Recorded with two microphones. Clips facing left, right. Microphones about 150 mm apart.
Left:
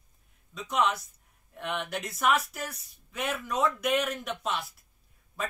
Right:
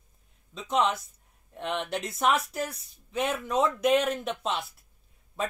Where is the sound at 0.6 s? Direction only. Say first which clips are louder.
Right 2 dB; 30° right (ahead or behind).